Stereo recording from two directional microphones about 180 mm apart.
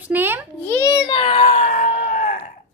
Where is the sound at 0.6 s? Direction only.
15° left (ahead or behind).